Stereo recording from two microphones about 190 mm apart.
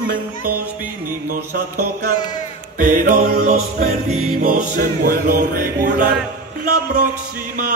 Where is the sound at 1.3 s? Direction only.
50° right (ahead or behind).